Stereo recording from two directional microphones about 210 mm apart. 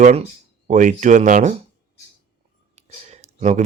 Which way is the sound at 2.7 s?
35° right (ahead or behind).